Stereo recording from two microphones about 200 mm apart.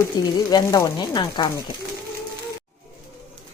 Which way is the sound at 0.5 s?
20° left (ahead or behind).